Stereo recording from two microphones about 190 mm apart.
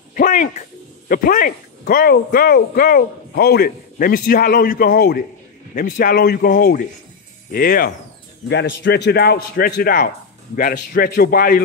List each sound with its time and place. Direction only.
0.1 s a man's voice: 40° left (ahead or behind)
8.5 s a man's voice: 65° left (ahead or behind); by 11.6 s 50° left (ahead or behind)